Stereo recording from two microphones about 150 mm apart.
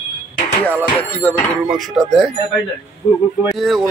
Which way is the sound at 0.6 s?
10° left (ahead or behind).